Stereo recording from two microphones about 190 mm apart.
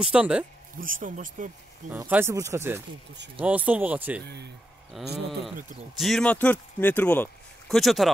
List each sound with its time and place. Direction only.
0.0 s speech: 5° right (ahead or behind)
0.7 s speech: 45° right (ahead or behind)
1.9 s speech: 10° right (ahead or behind)